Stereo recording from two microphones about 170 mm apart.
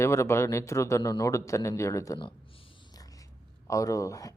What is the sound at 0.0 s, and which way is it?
Speech, 15° left (ahead or behind).